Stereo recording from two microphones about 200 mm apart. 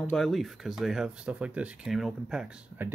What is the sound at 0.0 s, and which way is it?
Speech, 5° left (ahead or behind).